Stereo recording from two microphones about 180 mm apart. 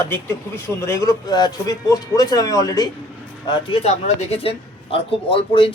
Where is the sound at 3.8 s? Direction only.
35° left (ahead or behind).